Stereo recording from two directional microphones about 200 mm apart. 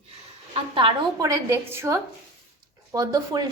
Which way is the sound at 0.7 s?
25° right (ahead or behind).